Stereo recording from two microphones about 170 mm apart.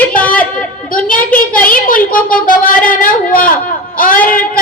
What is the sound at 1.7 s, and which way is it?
A woman's voice, 55° left (ahead or behind).